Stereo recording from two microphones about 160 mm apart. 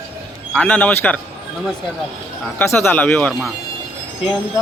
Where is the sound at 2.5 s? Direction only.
15° left (ahead or behind).